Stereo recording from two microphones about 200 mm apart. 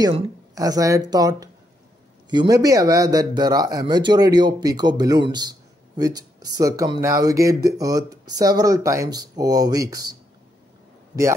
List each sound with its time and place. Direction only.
0.0 s speech: 20° right (ahead or behind)